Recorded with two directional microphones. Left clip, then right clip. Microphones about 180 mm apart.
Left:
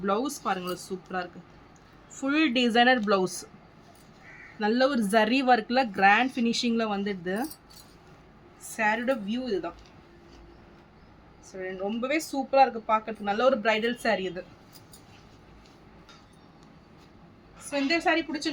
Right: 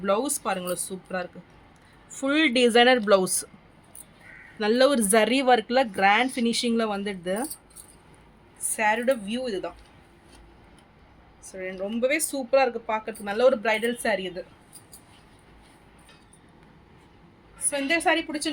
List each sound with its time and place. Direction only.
0.0 s a woman's voice: 45° right (ahead or behind)
4.6 s speech: 60° right (ahead or behind); by 7.4 s 35° right (ahead or behind)
8.7 s a woman's voice: 40° right (ahead or behind)
11.5 s speech: 50° right (ahead or behind); by 14.4 s 25° right (ahead or behind)
17.7 s a woman's voice: 45° right (ahead or behind)